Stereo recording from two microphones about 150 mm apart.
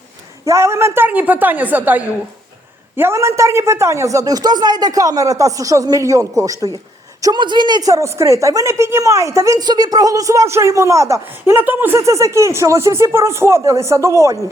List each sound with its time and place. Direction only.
0.4 s a woman's voice: 20° right (ahead or behind)